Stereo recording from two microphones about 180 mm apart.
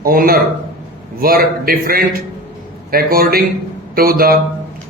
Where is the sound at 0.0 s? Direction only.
55° right (ahead or behind).